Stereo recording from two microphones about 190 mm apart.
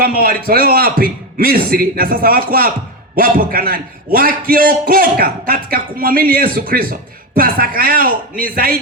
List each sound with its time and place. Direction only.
0.2 s a man's voice: 50° right (ahead or behind)